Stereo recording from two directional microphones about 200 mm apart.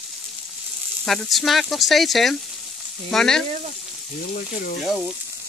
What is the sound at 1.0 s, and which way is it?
Speech, centre (ahead or behind).